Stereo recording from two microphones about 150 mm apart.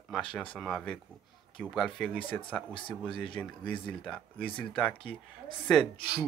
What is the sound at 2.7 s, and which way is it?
Speech, 35° left (ahead or behind).